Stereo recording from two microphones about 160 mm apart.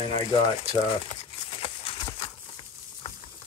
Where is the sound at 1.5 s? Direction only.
35° left (ahead or behind).